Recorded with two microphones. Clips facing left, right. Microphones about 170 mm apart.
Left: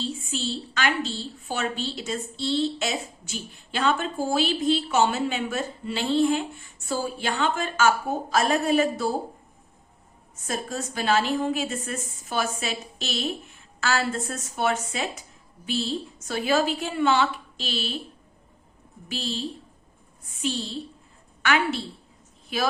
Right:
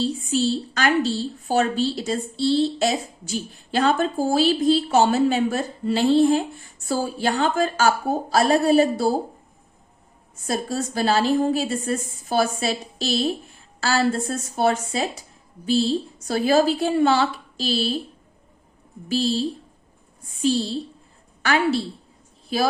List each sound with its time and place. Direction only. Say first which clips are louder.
0.0 s a woman's voice: right 8 dB; 40° right (ahead or behind)
10.4 s a woman's voice: right 5 dB; 35° right (ahead or behind)
19.0 s a woman's voice: right 9 dB; 35° right (ahead or behind)